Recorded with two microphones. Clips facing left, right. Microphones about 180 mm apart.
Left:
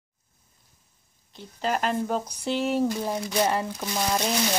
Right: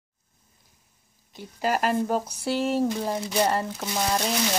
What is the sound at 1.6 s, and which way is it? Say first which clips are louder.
Speech: right 2 dB; 5° right (ahead or behind).